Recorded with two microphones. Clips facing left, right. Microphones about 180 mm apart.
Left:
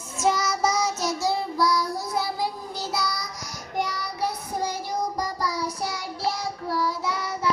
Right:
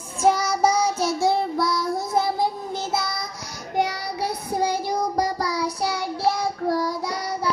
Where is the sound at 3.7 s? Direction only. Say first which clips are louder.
Right 5 dB; 65° right (ahead or behind).